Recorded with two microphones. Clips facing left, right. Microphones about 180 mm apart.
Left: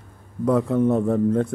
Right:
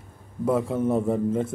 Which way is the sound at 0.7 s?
5° right (ahead or behind).